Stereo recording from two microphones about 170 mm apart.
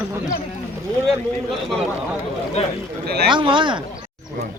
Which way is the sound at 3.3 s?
30° right (ahead or behind).